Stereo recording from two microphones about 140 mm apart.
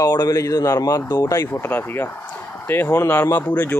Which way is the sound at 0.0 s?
25° left (ahead or behind).